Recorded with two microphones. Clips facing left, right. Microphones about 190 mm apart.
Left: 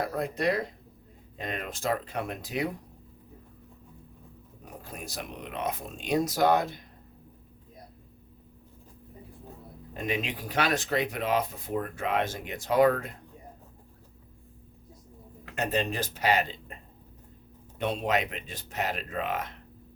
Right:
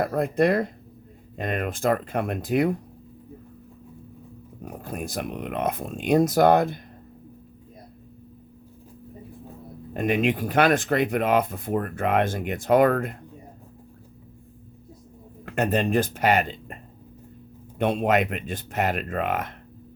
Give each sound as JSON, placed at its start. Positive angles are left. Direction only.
{"t": 0.0, "sound": "speech", "side_deg": -55}
{"t": 4.8, "sound": "speech", "side_deg": -50}
{"t": 9.9, "sound": "speech", "side_deg": -55}
{"t": 15.4, "sound": "speech", "side_deg": -55}
{"t": 17.7, "sound": "speech", "side_deg": -55}